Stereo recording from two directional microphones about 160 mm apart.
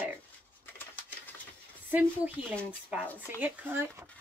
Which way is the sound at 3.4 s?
10° right (ahead or behind).